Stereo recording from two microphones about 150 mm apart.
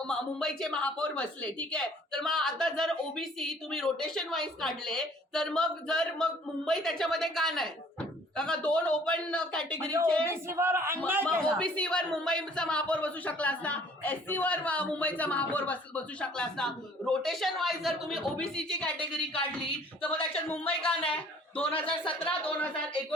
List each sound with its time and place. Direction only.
0.1 s speech: 5° left (ahead or behind)
10.2 s speech: 15° right (ahead or behind)
11.5 s speech: 5° left (ahead or behind)
20.5 s speech: 10° left (ahead or behind)
21.7 s speech: 35° left (ahead or behind)
22.3 s speech: 10° left (ahead or behind)